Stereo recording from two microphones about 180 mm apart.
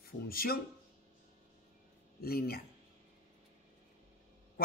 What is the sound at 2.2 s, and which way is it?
Speech, 60° left (ahead or behind).